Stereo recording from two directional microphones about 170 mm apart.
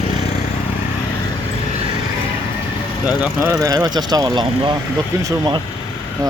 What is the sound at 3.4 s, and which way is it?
Speech, 20° right (ahead or behind).